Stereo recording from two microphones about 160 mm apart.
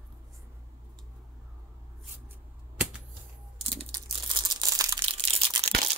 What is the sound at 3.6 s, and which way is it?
Crumpling, 35° right (ahead or behind).